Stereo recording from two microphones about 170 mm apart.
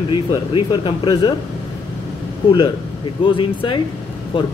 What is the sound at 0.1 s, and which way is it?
Speech, 25° left (ahead or behind).